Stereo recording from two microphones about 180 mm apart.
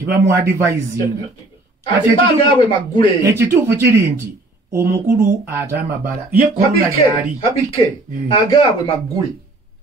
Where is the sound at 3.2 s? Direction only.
15° right (ahead or behind).